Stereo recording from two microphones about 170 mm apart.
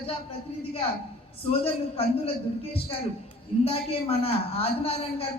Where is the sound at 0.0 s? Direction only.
35° left (ahead or behind).